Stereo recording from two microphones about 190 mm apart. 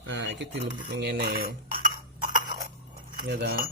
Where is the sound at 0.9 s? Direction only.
50° right (ahead or behind).